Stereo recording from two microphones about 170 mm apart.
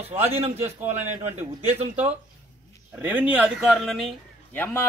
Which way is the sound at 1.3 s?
40° right (ahead or behind).